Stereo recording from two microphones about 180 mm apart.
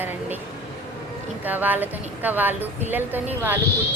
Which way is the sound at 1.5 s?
10° right (ahead or behind).